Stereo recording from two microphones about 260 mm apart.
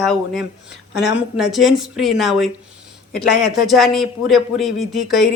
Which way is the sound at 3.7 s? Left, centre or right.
Centre.